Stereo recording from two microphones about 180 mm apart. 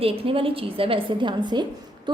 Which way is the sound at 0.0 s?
30° right (ahead or behind).